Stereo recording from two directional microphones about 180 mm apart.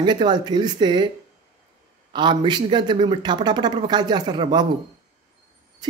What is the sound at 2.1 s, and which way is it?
Speech, 25° right (ahead or behind).